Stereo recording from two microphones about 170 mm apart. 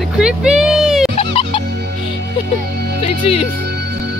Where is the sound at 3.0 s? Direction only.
35° left (ahead or behind).